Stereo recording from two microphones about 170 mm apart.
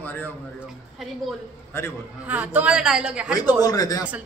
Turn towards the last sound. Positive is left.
turn(degrees=20)  # may be behind; listen again after turning